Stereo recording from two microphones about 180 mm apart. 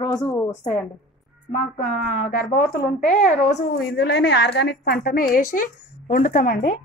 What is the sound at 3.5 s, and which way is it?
A woman's voice, 70° left (ahead or behind).